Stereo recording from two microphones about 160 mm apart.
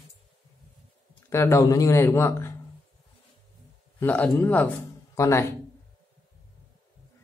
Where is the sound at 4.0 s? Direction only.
10° left (ahead or behind).